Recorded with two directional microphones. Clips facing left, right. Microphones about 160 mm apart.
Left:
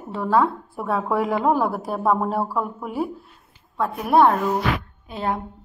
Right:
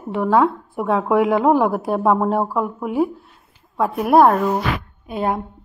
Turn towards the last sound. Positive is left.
turn(degrees=-10)  # may be behind; listen again after turning